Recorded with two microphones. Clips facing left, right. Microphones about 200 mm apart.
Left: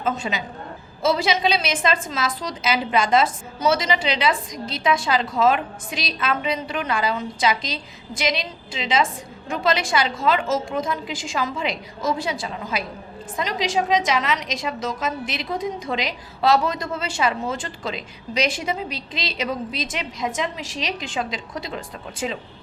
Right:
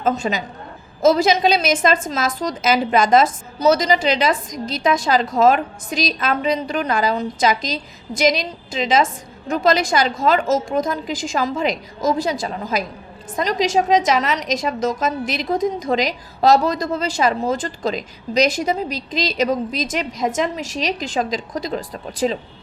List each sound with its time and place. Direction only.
0.0 s a woman's voice: 40° right (ahead or behind)